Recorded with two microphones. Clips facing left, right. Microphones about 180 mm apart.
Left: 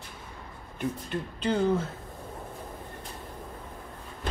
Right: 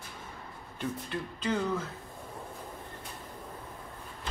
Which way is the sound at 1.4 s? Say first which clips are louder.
Left 6 dB; 30° left (ahead or behind).